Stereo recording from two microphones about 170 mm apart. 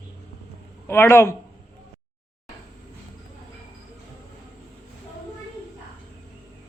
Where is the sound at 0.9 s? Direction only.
15° left (ahead or behind).